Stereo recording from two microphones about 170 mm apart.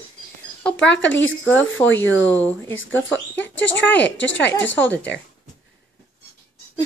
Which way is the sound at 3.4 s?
90° left.